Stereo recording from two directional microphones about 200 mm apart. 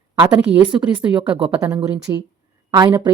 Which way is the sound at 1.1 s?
5° right (ahead or behind).